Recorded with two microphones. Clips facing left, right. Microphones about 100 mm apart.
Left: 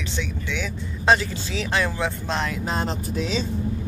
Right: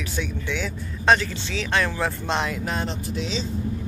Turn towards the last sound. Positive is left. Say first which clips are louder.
# left 2 dB
turn(degrees=45)  # may be behind; listen again after turning